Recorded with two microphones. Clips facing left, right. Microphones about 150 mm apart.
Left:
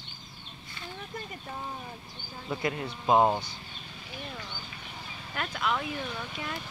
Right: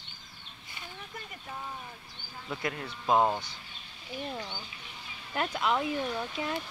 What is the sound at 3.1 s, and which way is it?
Speech, 15° left (ahead or behind).